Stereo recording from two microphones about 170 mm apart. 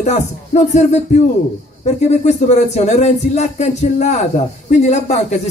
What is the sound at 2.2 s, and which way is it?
Speech, 40° left (ahead or behind).